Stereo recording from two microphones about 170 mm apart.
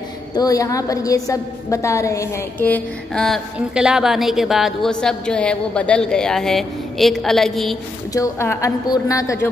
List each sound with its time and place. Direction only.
0.3 s a woman's voice: 20° left (ahead or behind)
3.5 s a woman's voice: 5° right (ahead or behind)
8.1 s a woman's voice: 15° left (ahead or behind)